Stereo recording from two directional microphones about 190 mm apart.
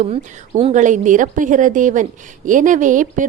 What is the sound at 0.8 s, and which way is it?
A woman's voice, 40° right (ahead or behind).